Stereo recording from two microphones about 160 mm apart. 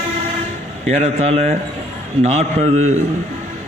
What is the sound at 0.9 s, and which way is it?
Speech, 45° right (ahead or behind).